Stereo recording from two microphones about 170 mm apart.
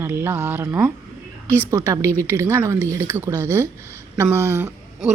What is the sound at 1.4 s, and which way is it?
Speech, 10° left (ahead or behind).